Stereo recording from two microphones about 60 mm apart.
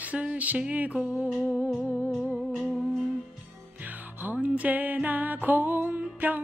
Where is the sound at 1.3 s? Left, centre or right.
Centre.